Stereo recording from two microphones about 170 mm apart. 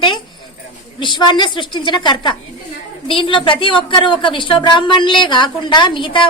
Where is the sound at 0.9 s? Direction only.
25° left (ahead or behind).